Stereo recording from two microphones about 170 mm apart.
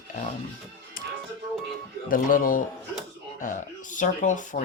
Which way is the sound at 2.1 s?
55° left (ahead or behind).